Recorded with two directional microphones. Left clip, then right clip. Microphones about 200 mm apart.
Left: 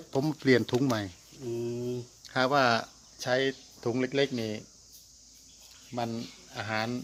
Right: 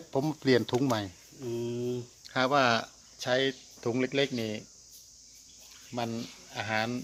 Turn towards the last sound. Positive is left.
turn(degrees=0)  # may be behind; listen again after turning